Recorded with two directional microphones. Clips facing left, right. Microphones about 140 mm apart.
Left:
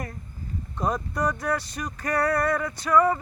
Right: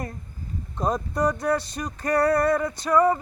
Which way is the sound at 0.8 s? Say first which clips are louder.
Right 2 dB; 25° right (ahead or behind).